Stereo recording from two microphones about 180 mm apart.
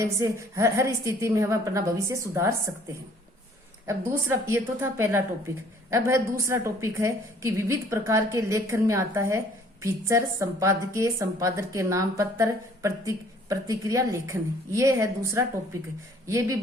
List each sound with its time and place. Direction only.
0.0 s a woman's voice: 15° right (ahead or behind)
3.8 s a woman's voice: 15° right (ahead or behind)